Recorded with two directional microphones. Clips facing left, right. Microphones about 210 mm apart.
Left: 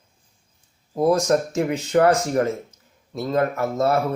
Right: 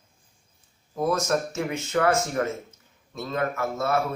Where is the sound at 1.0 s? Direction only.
35° left (ahead or behind).